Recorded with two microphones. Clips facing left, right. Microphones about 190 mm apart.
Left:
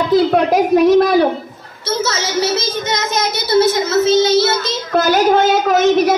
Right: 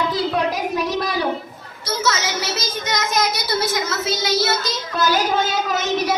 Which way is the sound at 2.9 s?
25° left (ahead or behind).